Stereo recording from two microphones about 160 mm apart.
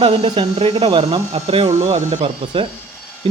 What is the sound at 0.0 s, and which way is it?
Speech, 35° right (ahead or behind).